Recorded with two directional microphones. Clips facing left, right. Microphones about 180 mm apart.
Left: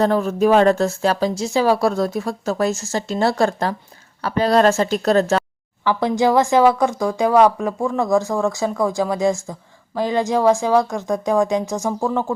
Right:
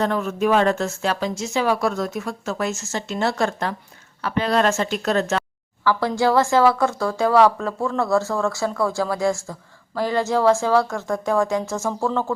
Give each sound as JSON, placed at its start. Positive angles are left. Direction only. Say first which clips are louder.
{"t": 0.0, "sound": "speech", "louder": "left 5 dB", "side_deg": 35}
{"t": 5.8, "sound": "speech", "louder": "left 2 dB", "side_deg": 20}